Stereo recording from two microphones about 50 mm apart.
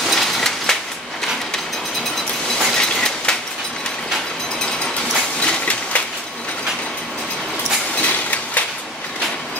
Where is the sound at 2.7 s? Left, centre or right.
Centre.